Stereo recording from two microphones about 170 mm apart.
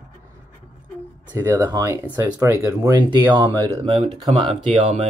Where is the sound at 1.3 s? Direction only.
15° right (ahead or behind).